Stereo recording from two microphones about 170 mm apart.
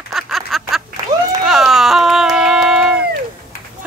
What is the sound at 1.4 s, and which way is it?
Run, centre (ahead or behind).